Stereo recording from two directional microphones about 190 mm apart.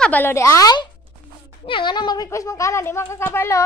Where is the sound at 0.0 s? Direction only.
10° left (ahead or behind).